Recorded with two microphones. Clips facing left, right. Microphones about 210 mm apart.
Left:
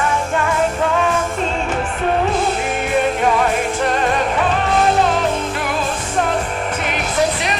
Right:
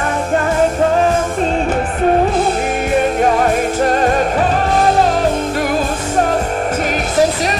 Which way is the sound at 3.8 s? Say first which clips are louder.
Right 5 dB; 40° right (ahead or behind).